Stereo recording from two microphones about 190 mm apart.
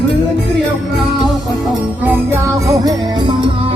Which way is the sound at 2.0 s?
10° right (ahead or behind).